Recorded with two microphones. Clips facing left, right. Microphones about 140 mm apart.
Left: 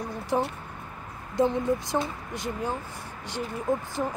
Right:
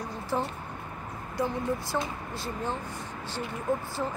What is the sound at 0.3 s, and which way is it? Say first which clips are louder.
Speech: left 4 dB; 15° left (ahead or behind).